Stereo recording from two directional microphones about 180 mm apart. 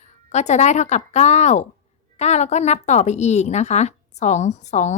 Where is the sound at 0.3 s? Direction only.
40° left (ahead or behind).